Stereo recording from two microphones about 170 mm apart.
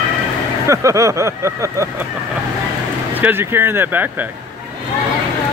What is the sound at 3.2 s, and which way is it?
Vehicle, 15° right (ahead or behind).